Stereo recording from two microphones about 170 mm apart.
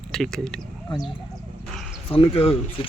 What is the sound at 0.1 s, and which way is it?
Speech, 5° left (ahead or behind).